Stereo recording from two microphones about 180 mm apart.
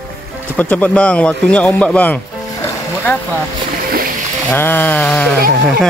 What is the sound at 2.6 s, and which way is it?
Music, 10° left (ahead or behind).